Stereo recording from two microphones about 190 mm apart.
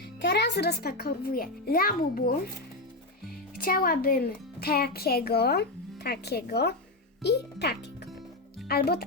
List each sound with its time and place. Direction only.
0.2 s a child's voice: 60° left (ahead or behind)
3.6 s a child's voice: 50° left (ahead or behind)